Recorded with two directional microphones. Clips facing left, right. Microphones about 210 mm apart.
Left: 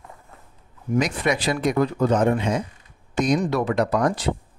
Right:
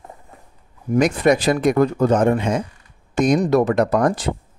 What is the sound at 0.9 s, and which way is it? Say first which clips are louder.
Speech: right 6 dB; 45° right (ahead or behind).